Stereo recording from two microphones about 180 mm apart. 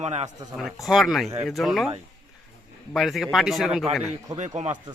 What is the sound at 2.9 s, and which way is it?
Speech, centre (ahead or behind).